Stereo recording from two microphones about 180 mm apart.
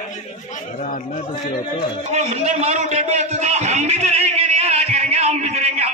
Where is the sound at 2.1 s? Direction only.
40° right (ahead or behind).